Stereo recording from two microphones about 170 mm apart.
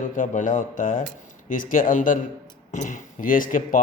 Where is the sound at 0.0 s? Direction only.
50° left (ahead or behind).